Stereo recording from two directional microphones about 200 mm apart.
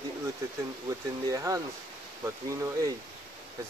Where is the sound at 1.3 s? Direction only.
15° right (ahead or behind).